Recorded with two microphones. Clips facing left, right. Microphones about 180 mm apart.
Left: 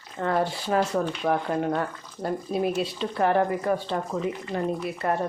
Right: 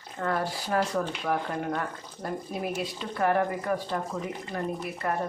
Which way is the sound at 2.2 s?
25° left (ahead or behind).